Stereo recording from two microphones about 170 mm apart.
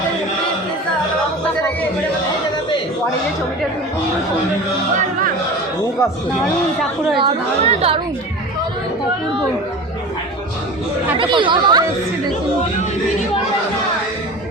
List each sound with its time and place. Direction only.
7.2 s a woman's voice: 35° right (ahead or behind)
11.2 s speech: 30° right (ahead or behind)